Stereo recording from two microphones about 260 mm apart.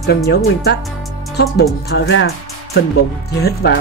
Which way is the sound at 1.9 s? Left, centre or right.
Left.